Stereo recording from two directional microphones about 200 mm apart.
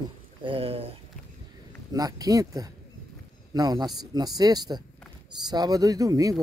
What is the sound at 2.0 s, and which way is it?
Speech, 20° right (ahead or behind).